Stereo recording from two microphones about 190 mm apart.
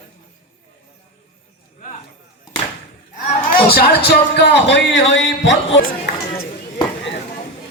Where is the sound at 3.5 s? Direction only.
55° left (ahead or behind); by 5.8 s 70° left (ahead or behind).